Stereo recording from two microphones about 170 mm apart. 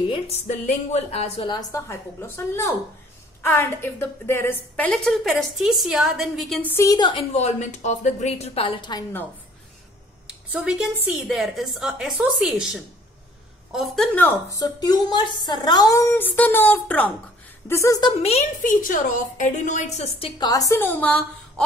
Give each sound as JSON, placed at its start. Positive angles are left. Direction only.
{"t": 0.1, "sound": "a woman's voice", "side_deg": 40}
{"t": 1.7, "sound": "a woman's voice", "side_deg": 15}
{"t": 6.6, "sound": "a woman's voice", "side_deg": 15}
{"t": 7.3, "sound": "a woman's voice", "side_deg": 40}
{"t": 10.2, "sound": "a woman's voice", "side_deg": -5}
{"t": 18.2, "sound": "a woman's voice", "side_deg": 40}